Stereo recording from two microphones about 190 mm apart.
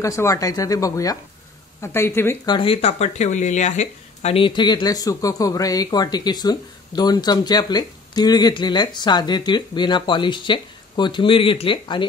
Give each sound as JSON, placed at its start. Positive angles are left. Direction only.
{"t": 0.0, "sound": "speech", "side_deg": 15}